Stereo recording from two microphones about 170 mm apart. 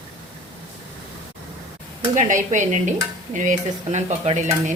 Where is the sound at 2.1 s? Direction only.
45° right (ahead or behind).